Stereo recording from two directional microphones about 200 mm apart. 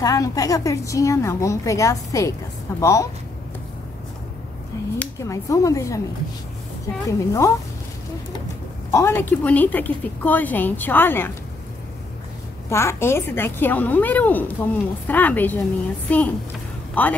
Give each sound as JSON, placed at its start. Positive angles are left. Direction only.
{"t": 0.0, "sound": "a woman's voice", "side_deg": 15}
{"t": 4.9, "sound": "a woman's voice", "side_deg": 15}
{"t": 7.1, "sound": "a woman's voice", "side_deg": 15}
{"t": 8.9, "sound": "a woman's voice", "side_deg": 15}
{"t": 12.6, "sound": "a woman's voice", "side_deg": 15}